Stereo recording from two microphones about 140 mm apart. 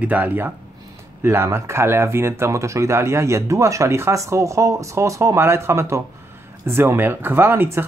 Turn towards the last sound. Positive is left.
turn(degrees=-15)  # may be behind; listen again after turning